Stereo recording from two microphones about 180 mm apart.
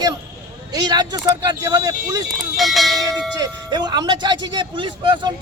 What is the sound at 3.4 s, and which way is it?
A man's voice, 20° right (ahead or behind).